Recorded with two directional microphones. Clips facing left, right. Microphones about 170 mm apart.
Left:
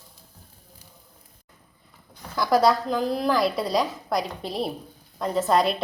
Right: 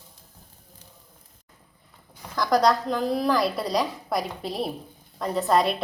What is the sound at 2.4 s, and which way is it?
A woman's voice, 5° left (ahead or behind).